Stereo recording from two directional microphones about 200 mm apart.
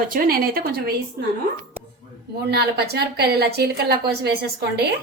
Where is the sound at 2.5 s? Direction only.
55° right (ahead or behind).